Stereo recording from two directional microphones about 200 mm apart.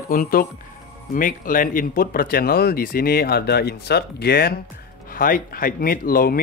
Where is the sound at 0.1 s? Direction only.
45° left (ahead or behind).